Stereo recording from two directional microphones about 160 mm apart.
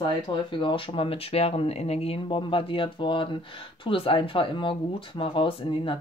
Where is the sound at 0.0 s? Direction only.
30° left (ahead or behind).